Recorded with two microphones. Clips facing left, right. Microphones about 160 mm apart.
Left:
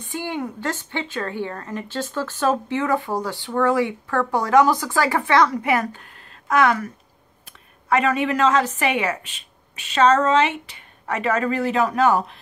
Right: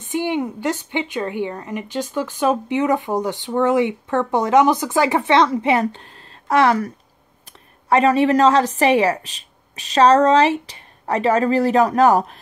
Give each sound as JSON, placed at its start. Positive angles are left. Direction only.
{"t": 0.0, "sound": "a woman's voice", "side_deg": -20}
{"t": 7.9, "sound": "a woman's voice", "side_deg": -35}